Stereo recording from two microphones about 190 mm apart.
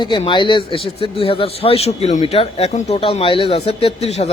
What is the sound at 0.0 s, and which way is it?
Speech, 25° left (ahead or behind).